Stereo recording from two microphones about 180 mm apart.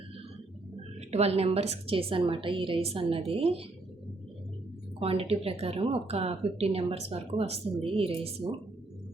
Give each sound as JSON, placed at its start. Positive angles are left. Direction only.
{"t": 1.1, "sound": "speech", "side_deg": -35}
{"t": 4.9, "sound": "speech", "side_deg": -30}